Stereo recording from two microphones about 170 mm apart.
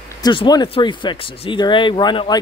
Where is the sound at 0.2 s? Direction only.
25° left (ahead or behind).